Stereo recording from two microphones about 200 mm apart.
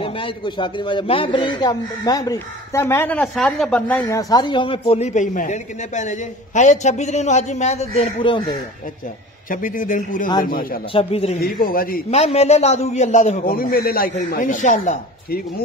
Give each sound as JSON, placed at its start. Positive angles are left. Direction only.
{"t": 0.0, "sound": "speech", "side_deg": 25}
{"t": 9.5, "sound": "speech", "side_deg": 40}
{"t": 10.9, "sound": "speech", "side_deg": 30}
{"t": 11.4, "sound": "speech", "side_deg": 45}
{"t": 12.1, "sound": "a man's voice", "side_deg": 30}